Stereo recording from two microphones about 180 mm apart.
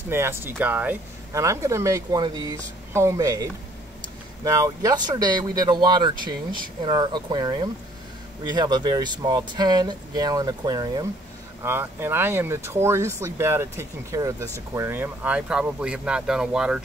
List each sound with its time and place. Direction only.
0.1 s speech: 15° right (ahead or behind)
4.5 s speech: 20° right (ahead or behind)